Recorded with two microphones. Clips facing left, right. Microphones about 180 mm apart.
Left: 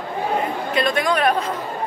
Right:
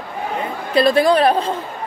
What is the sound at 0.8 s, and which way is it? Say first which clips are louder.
Speech: right 7 dB; 35° right (ahead or behind).